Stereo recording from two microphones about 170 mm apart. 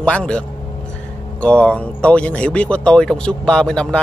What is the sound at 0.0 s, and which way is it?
Speech, 5° left (ahead or behind).